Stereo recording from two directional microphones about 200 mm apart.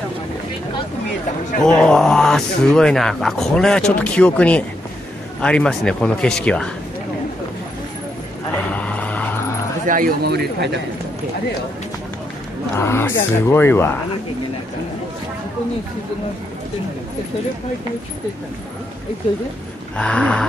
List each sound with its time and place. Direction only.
1.6 s speech: 5° left (ahead or behind)
8.7 s vehicle: 5° left (ahead or behind)
9.8 s speech: 45° right (ahead or behind)
12.7 s speech: 10° left (ahead or behind)
20.0 s speech: 5° left (ahead or behind)